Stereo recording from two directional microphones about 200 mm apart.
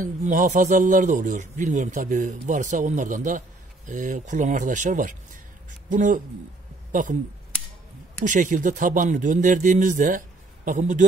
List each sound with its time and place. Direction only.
0.0 s speech: 40° right (ahead or behind)
8.2 s speech: 40° right (ahead or behind)